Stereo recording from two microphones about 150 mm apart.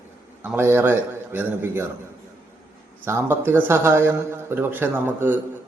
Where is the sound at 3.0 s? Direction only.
15° right (ahead or behind).